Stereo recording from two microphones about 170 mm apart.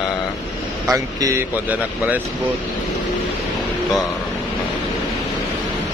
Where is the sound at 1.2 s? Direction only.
20° right (ahead or behind).